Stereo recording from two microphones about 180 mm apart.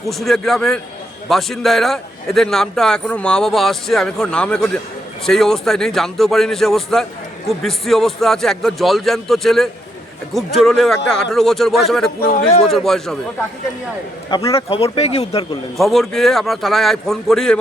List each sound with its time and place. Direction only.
0.1 s a man's voice: centre (ahead or behind)
14.3 s a man's voice: 30° left (ahead or behind)
15.8 s a man's voice: centre (ahead or behind)